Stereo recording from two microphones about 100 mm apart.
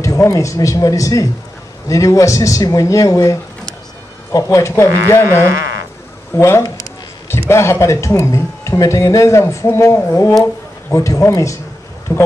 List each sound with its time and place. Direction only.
0.0 s speech: 30° left (ahead or behind)
6.3 s speech: 25° left (ahead or behind)